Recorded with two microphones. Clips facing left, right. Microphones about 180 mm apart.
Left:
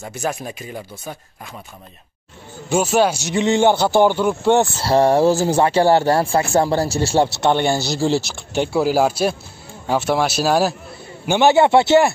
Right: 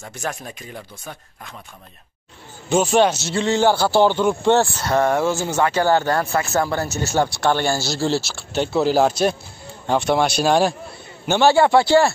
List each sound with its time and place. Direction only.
0.0 s speech: 5° left (ahead or behind)
2.7 s a man's voice: 10° left (ahead or behind)
11.2 s a man's voice: 15° left (ahead or behind)